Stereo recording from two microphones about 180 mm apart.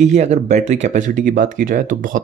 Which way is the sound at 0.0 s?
40° right (ahead or behind).